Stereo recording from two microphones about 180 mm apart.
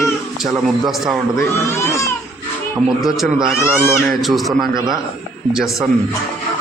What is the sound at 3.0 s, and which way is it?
Speech, centre (ahead or behind).